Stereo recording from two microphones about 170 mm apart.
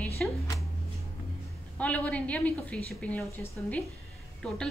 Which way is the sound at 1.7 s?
10° left (ahead or behind).